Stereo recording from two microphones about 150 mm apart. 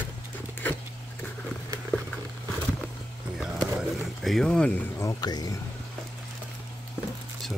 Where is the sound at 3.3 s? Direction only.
5° right (ahead or behind).